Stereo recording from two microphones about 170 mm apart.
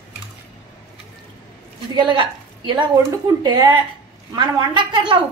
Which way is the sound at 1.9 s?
30° right (ahead or behind).